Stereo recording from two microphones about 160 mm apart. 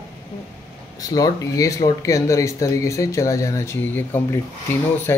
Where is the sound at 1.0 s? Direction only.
25° left (ahead or behind).